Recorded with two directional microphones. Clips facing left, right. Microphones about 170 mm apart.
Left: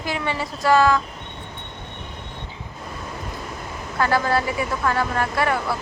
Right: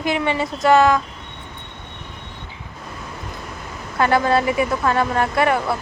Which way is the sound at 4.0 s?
20° right (ahead or behind).